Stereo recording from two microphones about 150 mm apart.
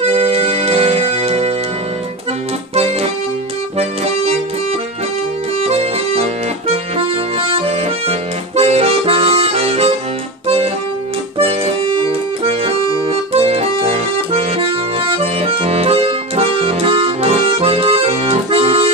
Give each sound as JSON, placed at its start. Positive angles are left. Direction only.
{"t": 0.0, "sound": "music", "side_deg": -45}
{"t": 2.7, "sound": "accordion", "side_deg": -45}
{"t": 5.6, "sound": "accordion", "side_deg": -45}
{"t": 11.4, "sound": "accordion", "side_deg": -40}